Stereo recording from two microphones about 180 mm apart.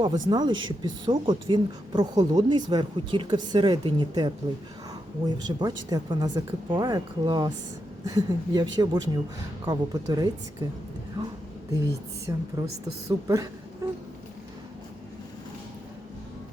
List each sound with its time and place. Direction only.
0.0 s a woman's voice: 25° right (ahead or behind)